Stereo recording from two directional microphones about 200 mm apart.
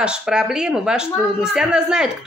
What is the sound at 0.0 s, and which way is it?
Speech, 5° right (ahead or behind).